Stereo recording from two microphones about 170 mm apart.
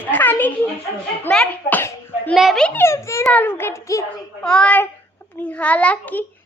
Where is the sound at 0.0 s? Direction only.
10° left (ahead or behind).